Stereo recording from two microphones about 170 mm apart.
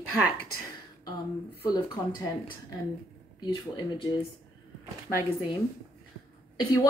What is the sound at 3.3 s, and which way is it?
Speech, 25° left (ahead or behind).